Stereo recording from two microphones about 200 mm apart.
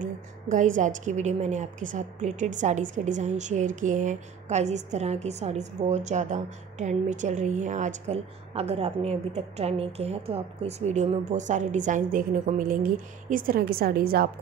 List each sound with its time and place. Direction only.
0.5 s a woman's voice: 40° right (ahead or behind)